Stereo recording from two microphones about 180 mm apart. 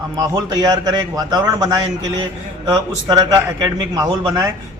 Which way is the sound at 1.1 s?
20° right (ahead or behind).